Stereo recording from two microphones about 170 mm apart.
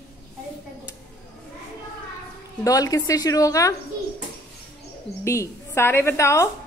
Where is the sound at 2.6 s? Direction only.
20° left (ahead or behind).